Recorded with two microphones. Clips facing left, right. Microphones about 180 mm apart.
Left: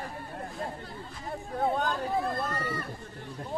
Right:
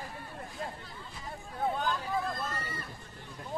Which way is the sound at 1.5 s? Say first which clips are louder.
Left 3 dB; 50° left (ahead or behind).